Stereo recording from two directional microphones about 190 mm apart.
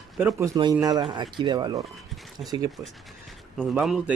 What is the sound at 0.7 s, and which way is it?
Speech, 20° right (ahead or behind).